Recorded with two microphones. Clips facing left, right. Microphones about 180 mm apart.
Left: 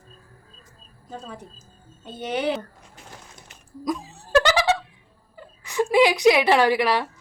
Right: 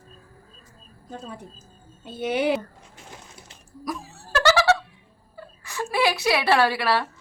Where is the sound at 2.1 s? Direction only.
10° right (ahead or behind).